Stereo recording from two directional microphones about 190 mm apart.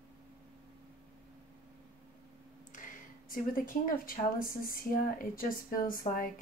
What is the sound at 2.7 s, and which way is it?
Speech, 45° left (ahead or behind).